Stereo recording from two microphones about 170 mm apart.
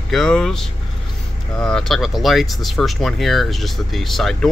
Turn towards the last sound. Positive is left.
turn(degrees=0)  # may be behind; listen again after turning